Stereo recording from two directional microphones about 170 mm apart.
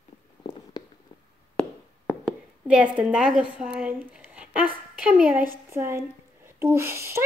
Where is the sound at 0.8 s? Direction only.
25° left (ahead or behind).